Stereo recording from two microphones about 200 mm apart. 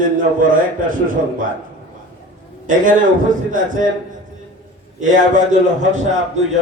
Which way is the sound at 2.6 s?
40° right (ahead or behind).